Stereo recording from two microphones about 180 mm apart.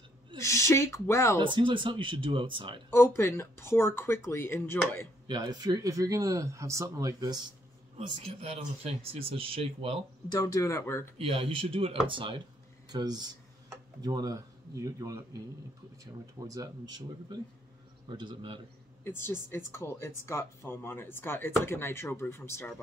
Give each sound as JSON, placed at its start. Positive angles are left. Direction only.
{"t": 0.4, "sound": "speech", "side_deg": 15}
{"t": 1.4, "sound": "speech", "side_deg": -30}
{"t": 2.9, "sound": "speech", "side_deg": 15}
{"t": 5.2, "sound": "speech", "side_deg": -25}
{"t": 8.2, "sound": "speech", "side_deg": -35}
{"t": 10.3, "sound": "speech", "side_deg": 20}
{"t": 11.1, "sound": "speech", "side_deg": -30}
{"t": 19.0, "sound": "speech", "side_deg": 10}